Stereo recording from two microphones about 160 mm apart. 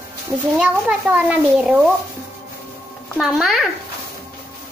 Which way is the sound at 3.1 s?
Centre (ahead or behind).